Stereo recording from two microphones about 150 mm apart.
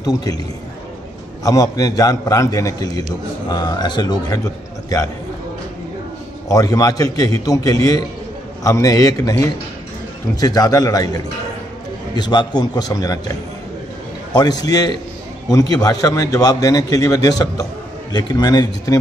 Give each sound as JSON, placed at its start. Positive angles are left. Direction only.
{"t": 0.0, "sound": "a man's voice", "side_deg": 25}
{"t": 1.4, "sound": "a man's voice", "side_deg": 25}
{"t": 6.5, "sound": "a man's voice", "side_deg": 25}
{"t": 12.2, "sound": "a man's voice", "side_deg": 30}